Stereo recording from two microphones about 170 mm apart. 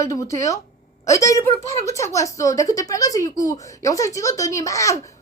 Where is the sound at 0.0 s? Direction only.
20° left (ahead or behind).